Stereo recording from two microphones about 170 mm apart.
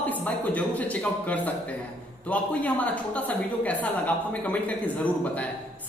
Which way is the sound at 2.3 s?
10° left (ahead or behind).